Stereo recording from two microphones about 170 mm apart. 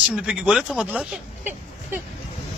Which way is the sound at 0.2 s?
5° right (ahead or behind).